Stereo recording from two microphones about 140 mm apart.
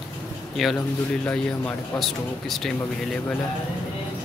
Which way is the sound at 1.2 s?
10° left (ahead or behind).